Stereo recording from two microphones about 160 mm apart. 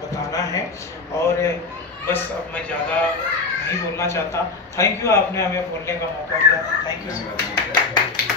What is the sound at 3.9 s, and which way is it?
A man's voice, 20° left (ahead or behind).